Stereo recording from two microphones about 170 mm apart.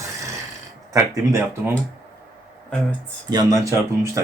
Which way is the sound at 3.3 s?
20° right (ahead or behind).